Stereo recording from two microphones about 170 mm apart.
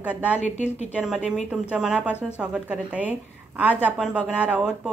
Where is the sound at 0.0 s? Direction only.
10° right (ahead or behind).